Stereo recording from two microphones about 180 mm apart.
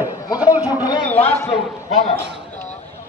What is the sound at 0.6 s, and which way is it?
Speech, 20° left (ahead or behind).